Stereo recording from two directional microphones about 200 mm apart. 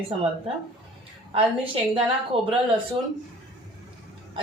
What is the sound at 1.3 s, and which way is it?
Speech, 25° right (ahead or behind).